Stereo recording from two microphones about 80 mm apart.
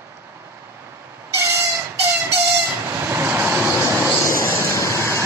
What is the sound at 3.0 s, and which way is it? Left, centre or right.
Vehicle, right.